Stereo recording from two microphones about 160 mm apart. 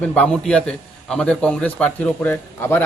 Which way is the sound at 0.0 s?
10° left (ahead or behind).